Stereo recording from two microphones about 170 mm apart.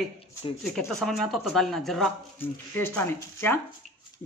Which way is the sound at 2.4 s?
10° left (ahead or behind).